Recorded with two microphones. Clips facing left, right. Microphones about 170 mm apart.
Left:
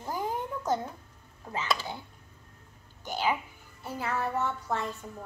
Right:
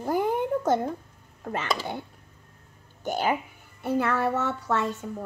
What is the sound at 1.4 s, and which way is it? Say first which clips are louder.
Speech: right 4 dB; 65° right (ahead or behind).